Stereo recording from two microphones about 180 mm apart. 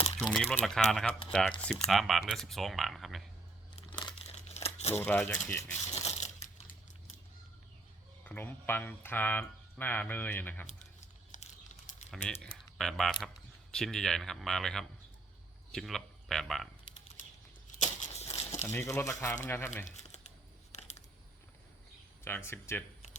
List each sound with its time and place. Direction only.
0.2 s speech: centre (ahead or behind)
3.8 s crumpling: 30° left (ahead or behind)
4.9 s speech: 10° left (ahead or behind)
5.9 s crushing: 40° left (ahead or behind)
8.2 s speech: 10° left (ahead or behind)
11.3 s a sound: 40° left (ahead or behind)
12.1 s speech: 5° left (ahead or behind)
17.7 s a sound: 40° left (ahead or behind)
18.7 s speech: 15° left (ahead or behind)
19.8 s crumpling: 40° left (ahead or behind)
20.7 s a sound: 40° left (ahead or behind)
22.2 s speech: 15° left (ahead or behind)